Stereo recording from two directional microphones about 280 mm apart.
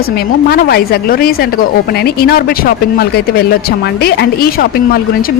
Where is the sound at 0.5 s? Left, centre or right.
Left.